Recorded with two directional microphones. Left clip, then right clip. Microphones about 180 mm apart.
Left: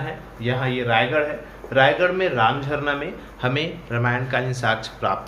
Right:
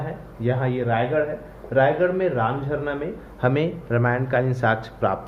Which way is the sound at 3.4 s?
40° right (ahead or behind).